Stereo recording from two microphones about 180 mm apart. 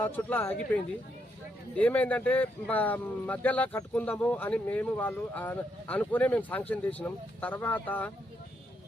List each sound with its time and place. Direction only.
0.0 s speech: 10° left (ahead or behind)
1.8 s speech: 10° left (ahead or behind)